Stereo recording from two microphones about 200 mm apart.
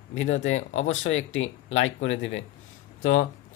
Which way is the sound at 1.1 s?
75° left (ahead or behind).